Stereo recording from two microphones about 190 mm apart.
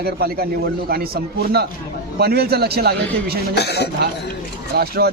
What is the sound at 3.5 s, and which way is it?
Speech, 60° left (ahead or behind).